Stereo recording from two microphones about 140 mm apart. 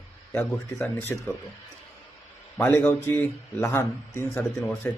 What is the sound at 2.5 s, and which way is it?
A man's voice, 15° left (ahead or behind).